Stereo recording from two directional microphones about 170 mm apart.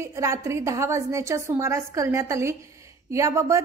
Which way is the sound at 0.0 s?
15° right (ahead or behind).